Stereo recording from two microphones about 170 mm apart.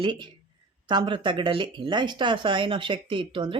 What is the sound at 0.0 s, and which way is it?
Speech, 25° right (ahead or behind).